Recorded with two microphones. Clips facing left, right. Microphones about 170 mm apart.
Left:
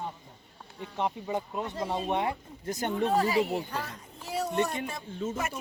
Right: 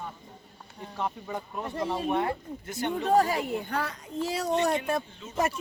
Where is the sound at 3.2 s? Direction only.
45° right (ahead or behind).